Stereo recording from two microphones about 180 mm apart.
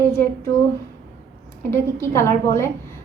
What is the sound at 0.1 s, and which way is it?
Speech, 15° left (ahead or behind).